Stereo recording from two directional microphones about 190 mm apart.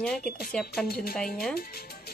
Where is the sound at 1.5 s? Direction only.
55° left (ahead or behind).